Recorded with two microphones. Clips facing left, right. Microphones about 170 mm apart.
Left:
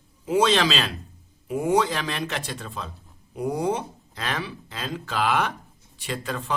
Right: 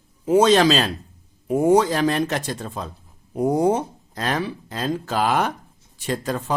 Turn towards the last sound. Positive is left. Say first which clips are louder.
# right 5 dB
turn(degrees=-40)  # may be behind; listen again after turning